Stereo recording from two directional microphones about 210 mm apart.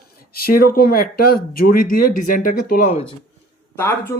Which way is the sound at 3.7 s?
10° left (ahead or behind).